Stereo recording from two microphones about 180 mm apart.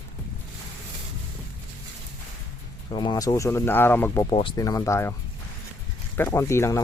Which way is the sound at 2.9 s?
25° left (ahead or behind).